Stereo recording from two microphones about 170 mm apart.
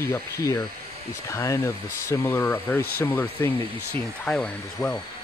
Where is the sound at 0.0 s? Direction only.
20° left (ahead or behind).